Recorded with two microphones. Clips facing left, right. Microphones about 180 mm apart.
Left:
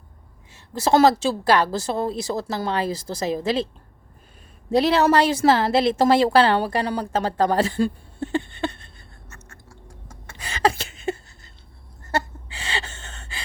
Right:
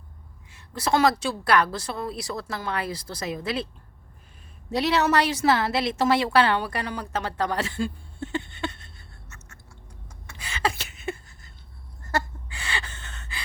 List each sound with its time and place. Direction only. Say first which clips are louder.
0.5 s a woman's voice: left 5 dB; 25° left (ahead or behind)
4.7 s a woman's voice: left 5 dB; 30° left (ahead or behind)
9.3 s music: left 4 dB; 35° left (ahead or behind)
10.3 s a sound: left 6 dB; 40° left (ahead or behind)